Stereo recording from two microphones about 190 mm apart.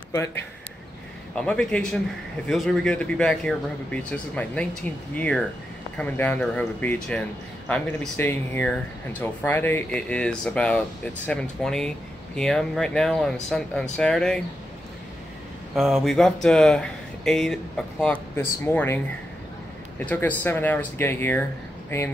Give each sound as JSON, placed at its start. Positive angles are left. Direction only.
{"t": 0.1, "sound": "a man's voice", "side_deg": 15}
{"t": 15.7, "sound": "speech", "side_deg": 0}
{"t": 20.1, "sound": "a man's voice", "side_deg": 10}